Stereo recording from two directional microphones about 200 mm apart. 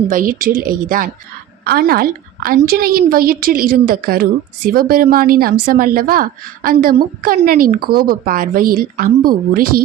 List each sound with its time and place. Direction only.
0.1 s a woman's voice: 45° right (ahead or behind)